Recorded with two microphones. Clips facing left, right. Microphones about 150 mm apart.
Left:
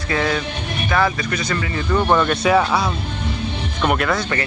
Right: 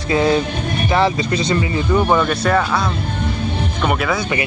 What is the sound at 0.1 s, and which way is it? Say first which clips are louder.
Speech: right 6 dB; 25° right (ahead or behind).